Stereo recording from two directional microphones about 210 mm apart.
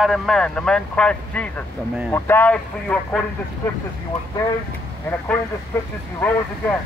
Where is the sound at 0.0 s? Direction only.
Centre (ahead or behind).